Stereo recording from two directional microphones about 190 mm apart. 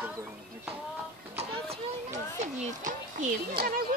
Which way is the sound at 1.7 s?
40° right (ahead or behind).